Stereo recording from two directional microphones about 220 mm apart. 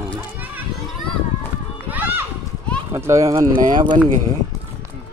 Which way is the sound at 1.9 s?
10° right (ahead or behind).